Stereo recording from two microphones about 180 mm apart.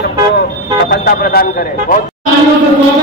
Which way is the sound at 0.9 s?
60° left (ahead or behind).